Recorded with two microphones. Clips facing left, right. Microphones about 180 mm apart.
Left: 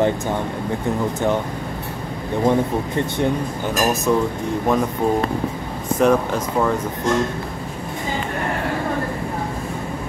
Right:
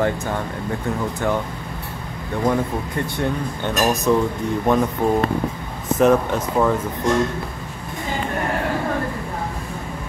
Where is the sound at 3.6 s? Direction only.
5° left (ahead or behind).